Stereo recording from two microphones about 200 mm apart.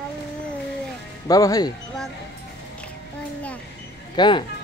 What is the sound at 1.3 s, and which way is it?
Speech, 20° left (ahead or behind).